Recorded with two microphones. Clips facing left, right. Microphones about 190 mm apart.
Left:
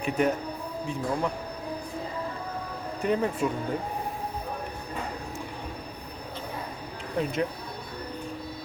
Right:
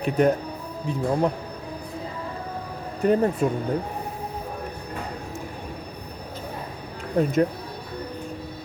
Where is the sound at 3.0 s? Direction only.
40° right (ahead or behind).